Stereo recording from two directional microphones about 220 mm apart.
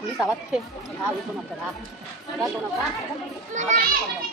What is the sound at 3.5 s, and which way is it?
Speech, 35° right (ahead or behind).